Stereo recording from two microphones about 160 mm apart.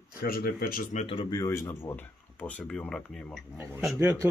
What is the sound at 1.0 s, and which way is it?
Speech, 30° left (ahead or behind).